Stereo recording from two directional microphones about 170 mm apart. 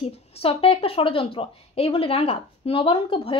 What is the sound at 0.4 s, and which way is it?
A woman's voice, 35° left (ahead or behind).